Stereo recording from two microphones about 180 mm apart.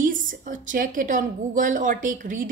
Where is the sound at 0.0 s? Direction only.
45° right (ahead or behind).